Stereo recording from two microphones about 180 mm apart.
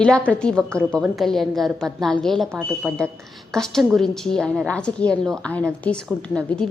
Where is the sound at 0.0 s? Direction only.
5° left (ahead or behind).